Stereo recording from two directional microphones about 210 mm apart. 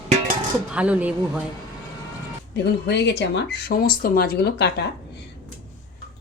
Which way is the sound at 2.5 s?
55° left (ahead or behind).